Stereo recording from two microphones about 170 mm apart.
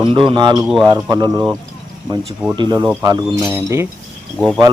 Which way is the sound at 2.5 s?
25° right (ahead or behind).